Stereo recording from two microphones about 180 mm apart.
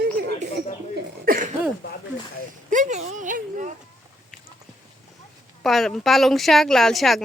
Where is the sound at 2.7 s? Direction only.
40° right (ahead or behind).